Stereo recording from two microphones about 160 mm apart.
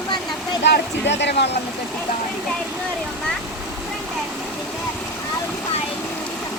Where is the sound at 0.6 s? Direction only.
90° left.